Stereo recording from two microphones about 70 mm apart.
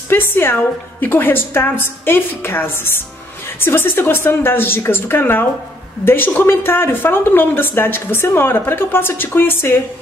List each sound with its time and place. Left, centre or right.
0.1 s a woman's voice: left